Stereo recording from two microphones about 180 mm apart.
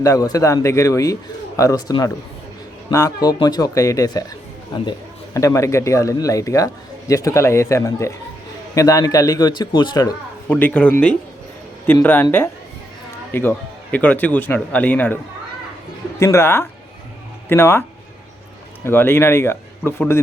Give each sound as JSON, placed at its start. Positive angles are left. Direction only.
{"t": 0.0, "sound": "a man's voice", "side_deg": 20}
{"t": 10.5, "sound": "speech", "side_deg": 10}
{"t": 16.2, "sound": "speech", "side_deg": 15}
{"t": 18.9, "sound": "speech", "side_deg": 10}